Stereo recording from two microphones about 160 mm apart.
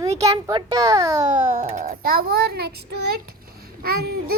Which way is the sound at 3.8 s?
75° right (ahead or behind).